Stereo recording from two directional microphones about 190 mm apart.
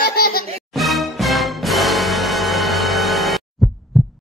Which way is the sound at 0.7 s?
Centre (ahead or behind).